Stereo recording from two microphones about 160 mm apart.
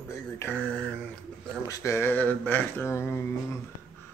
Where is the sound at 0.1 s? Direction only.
15° left (ahead or behind).